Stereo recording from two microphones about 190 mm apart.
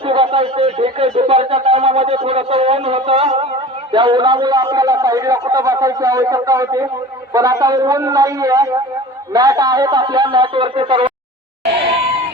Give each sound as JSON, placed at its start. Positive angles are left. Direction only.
{"t": 0.0, "sound": "a man's voice", "side_deg": -30}